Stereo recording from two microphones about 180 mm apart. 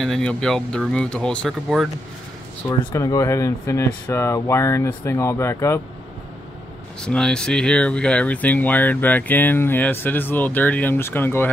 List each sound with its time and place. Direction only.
0.0 s speech: 5° left (ahead or behind)
2.9 s speech: 15° left (ahead or behind)
7.0 s speech: 5° left (ahead or behind)